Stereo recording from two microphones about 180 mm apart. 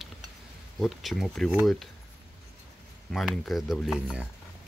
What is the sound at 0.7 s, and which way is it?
Speech, centre (ahead or behind).